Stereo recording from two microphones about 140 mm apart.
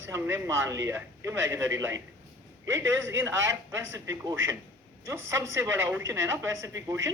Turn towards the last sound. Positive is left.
turn(degrees=-20)  # may be behind; listen again after turning